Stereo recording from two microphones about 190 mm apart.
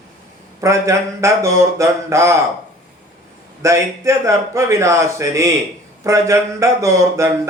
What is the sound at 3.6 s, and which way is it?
Speech, 15° right (ahead or behind).